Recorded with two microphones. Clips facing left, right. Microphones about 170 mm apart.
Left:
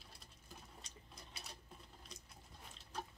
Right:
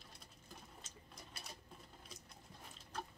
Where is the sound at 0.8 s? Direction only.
Centre (ahead or behind).